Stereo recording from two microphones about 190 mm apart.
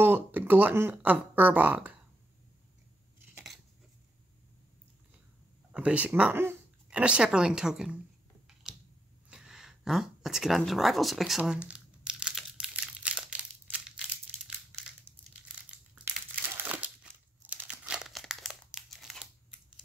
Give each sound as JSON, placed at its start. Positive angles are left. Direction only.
{"t": 0.0, "sound": "speech", "side_deg": -10}
{"t": 3.2, "sound": "scissors", "side_deg": -5}
{"t": 5.7, "sound": "speech", "side_deg": -5}
{"t": 8.6, "sound": "a sound", "side_deg": -5}
{"t": 15.4, "sound": "crumpling", "side_deg": -10}